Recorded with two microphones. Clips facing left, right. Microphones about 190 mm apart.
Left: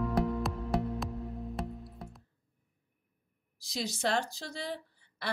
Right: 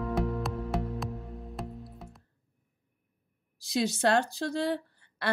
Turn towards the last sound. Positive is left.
turn(degrees=-60)  # may be behind; listen again after turning